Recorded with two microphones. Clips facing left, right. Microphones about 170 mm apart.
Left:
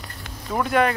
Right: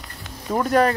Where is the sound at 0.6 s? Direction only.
40° right (ahead or behind).